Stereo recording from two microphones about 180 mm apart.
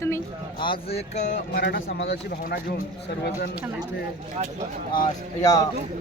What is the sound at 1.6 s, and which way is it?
Speech, 70° left (ahead or behind).